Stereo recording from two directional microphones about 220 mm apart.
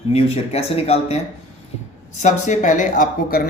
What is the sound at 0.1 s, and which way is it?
Speech, 30° left (ahead or behind).